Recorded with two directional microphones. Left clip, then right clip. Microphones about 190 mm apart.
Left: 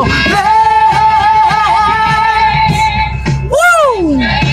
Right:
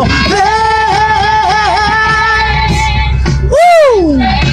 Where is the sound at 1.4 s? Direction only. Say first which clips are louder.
Left 1 dB; 5° right (ahead or behind).